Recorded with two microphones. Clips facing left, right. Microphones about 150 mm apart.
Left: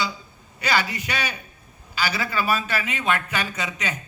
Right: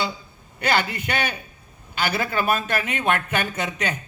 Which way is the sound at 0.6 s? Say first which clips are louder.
Right 2 dB; 55° right (ahead or behind).